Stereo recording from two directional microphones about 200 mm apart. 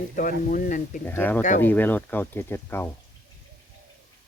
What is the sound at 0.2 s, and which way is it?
Speech, 40° left (ahead or behind).